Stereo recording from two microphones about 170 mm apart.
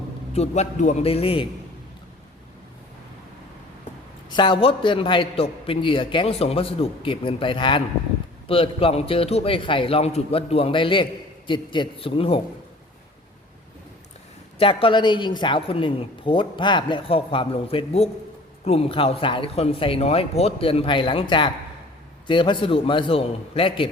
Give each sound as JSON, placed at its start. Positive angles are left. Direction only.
{"t": 0.3, "sound": "a man's voice", "side_deg": 40}
{"t": 4.3, "sound": "a man's voice", "side_deg": 25}
{"t": 14.6, "sound": "a man's voice", "side_deg": 30}